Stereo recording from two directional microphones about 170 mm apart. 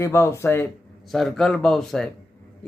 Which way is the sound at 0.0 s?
15° left (ahead or behind).